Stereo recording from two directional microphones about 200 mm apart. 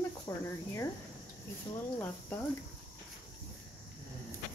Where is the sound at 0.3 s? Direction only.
15° left (ahead or behind).